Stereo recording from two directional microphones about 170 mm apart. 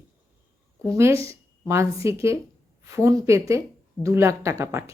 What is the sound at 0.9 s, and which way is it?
A woman's voice, 15° right (ahead or behind).